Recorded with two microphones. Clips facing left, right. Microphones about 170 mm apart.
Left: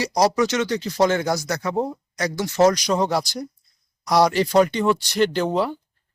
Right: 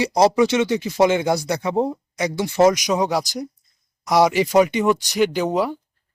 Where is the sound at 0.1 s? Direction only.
25° right (ahead or behind).